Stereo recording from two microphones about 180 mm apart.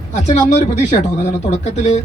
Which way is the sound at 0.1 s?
40° left (ahead or behind).